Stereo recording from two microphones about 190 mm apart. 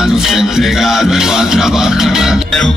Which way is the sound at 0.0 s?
Centre (ahead or behind).